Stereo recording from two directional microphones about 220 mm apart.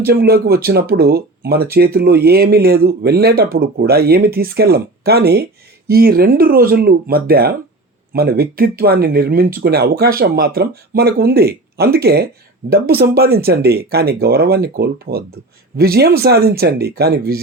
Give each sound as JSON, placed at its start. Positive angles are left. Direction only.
{"t": 0.0, "sound": "speech", "side_deg": -45}